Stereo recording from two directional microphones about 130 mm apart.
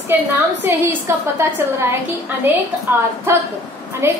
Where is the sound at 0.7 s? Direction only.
15° right (ahead or behind).